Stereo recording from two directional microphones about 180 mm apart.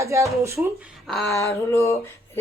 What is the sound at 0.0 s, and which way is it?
Speech, 15° right (ahead or behind).